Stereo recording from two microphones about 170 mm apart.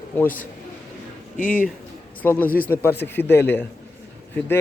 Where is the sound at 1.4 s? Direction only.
50° left (ahead or behind).